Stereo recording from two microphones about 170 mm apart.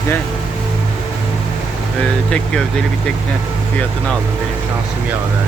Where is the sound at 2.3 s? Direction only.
5° left (ahead or behind).